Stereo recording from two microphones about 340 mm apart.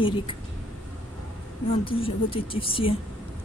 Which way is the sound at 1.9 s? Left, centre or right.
Centre.